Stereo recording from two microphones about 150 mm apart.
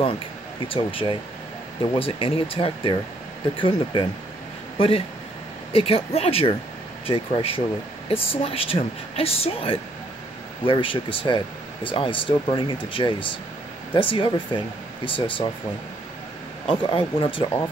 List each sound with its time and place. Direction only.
0.7 s speech: 35° left (ahead or behind)
16.6 s speech: 35° left (ahead or behind)